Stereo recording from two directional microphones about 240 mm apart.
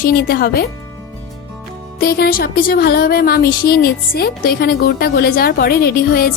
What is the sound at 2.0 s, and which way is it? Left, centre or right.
Speech, left.